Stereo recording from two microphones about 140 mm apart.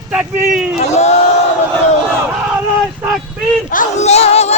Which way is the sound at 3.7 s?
60° left (ahead or behind).